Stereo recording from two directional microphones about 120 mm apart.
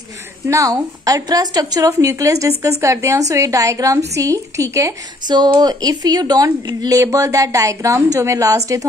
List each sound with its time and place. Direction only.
0.5 s speech: 30° right (ahead or behind)
5.2 s speech: 35° right (ahead or behind)